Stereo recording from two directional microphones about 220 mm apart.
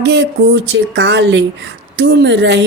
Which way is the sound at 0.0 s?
50° right (ahead or behind).